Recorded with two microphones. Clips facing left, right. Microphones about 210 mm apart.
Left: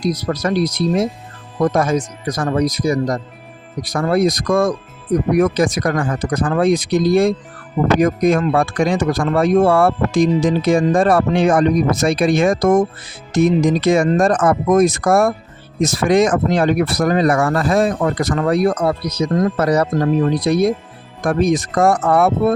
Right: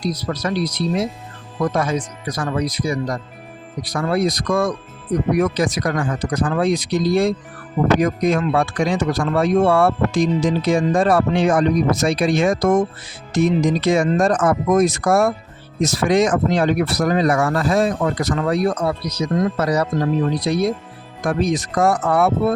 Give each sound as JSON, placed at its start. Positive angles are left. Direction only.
{"t": 0.0, "sound": "speech", "side_deg": 45}